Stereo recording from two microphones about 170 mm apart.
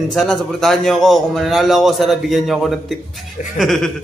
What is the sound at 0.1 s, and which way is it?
A man's voice, 5° left (ahead or behind).